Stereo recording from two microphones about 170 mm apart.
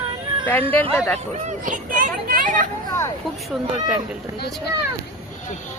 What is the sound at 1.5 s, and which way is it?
Speech, 50° right (ahead or behind).